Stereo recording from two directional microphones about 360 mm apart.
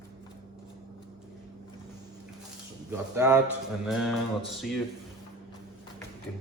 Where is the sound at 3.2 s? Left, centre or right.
Centre.